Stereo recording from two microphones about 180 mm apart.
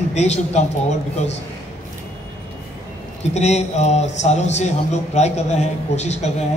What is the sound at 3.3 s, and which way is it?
A man's voice, 40° left (ahead or behind).